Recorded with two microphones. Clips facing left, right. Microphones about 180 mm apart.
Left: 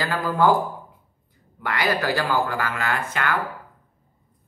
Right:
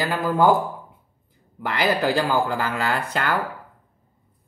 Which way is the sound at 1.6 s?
25° right (ahead or behind).